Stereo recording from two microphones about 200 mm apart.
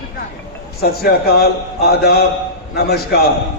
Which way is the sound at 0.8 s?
50° left (ahead or behind).